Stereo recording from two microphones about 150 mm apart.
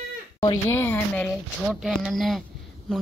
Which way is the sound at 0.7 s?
15° left (ahead or behind).